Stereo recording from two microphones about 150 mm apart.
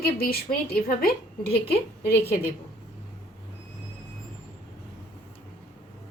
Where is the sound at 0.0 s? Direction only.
85° left.